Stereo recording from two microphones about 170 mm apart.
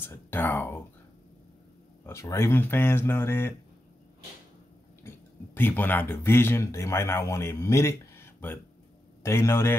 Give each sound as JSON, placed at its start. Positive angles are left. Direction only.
{"t": 0.0, "sound": "speech", "side_deg": 10}
{"t": 2.0, "sound": "speech", "side_deg": 15}
{"t": 5.0, "sound": "speech", "side_deg": 10}
{"t": 9.2, "sound": "speech", "side_deg": 15}